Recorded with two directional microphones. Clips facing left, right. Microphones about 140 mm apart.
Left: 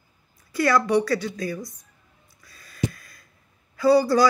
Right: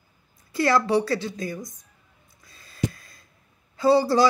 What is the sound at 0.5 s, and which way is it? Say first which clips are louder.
Speech: even; 25° right (ahead or behind).